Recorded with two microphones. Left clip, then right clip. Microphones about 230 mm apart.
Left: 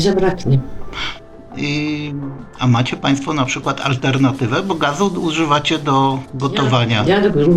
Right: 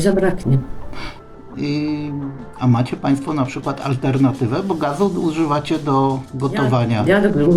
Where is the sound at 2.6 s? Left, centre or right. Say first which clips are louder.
Left 2 dB; centre.